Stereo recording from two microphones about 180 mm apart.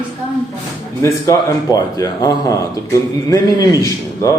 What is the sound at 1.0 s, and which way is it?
A man's voice, 20° left (ahead or behind).